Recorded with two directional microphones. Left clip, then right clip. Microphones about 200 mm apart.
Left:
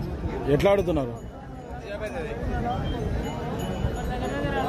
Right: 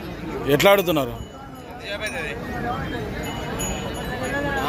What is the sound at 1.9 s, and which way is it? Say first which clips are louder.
Speech: right 4 dB; 35° left (ahead or behind).